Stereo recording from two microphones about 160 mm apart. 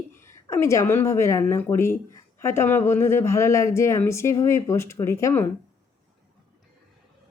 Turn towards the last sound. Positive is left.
turn(degrees=15)  # may be behind; listen again after turning